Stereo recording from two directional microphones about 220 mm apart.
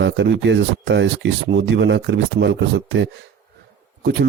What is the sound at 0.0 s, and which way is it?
Speech, 55° right (ahead or behind).